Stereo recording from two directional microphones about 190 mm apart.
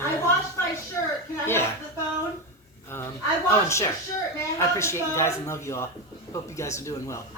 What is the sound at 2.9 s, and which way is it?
Speech, 10° left (ahead or behind).